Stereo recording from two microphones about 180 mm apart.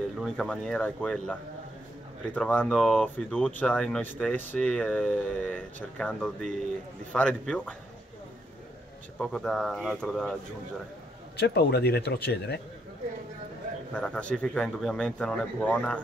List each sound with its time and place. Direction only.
0.2 s speech: centre (ahead or behind)
9.2 s speech: centre (ahead or behind)
11.3 s speech: 65° left (ahead or behind)
13.9 s speech: 5° left (ahead or behind)